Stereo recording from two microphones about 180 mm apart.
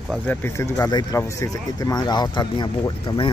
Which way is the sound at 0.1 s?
10° left (ahead or behind).